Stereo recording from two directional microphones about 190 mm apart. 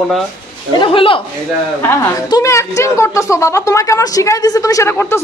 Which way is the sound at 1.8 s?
15° left (ahead or behind).